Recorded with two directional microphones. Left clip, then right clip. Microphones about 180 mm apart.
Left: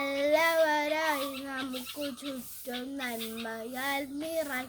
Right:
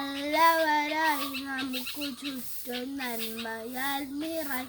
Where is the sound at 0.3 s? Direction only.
15° left (ahead or behind).